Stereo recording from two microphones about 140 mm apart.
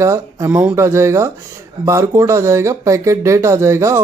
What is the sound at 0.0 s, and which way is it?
Speech, 20° right (ahead or behind).